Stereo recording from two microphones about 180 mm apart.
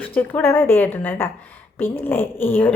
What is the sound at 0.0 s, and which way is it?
A woman's voice, 10° left (ahead or behind).